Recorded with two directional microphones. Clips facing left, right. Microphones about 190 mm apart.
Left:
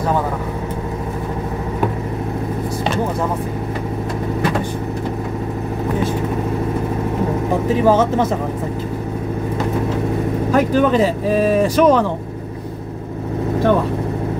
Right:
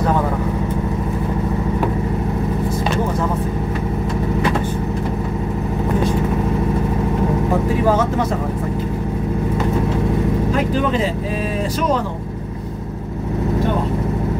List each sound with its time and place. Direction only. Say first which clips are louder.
11.7 s speech: left 6 dB; 70° left (ahead or behind)